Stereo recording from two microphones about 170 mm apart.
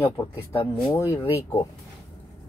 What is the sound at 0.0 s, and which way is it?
Speech, 15° left (ahead or behind).